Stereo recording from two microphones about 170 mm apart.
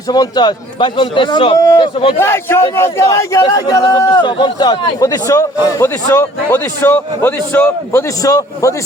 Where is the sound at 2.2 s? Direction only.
15° left (ahead or behind).